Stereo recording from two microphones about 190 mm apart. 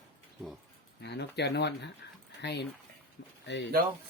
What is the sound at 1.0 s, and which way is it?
Speech, 60° left (ahead or behind).